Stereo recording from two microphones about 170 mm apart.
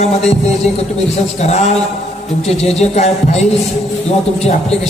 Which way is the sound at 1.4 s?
40° left (ahead or behind).